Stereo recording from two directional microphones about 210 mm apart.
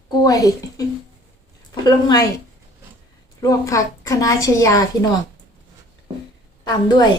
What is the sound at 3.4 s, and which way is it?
A child's voice, 15° left (ahead or behind).